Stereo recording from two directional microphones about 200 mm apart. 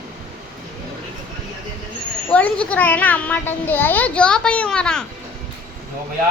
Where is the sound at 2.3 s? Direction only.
5° left (ahead or behind).